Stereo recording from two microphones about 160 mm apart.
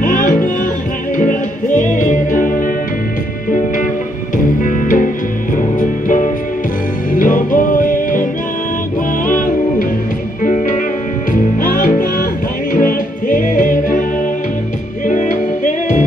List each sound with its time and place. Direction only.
0.0 s music: 55° left (ahead or behind)
4.6 s music: 55° left (ahead or behind)
15.0 s music: 50° left (ahead or behind)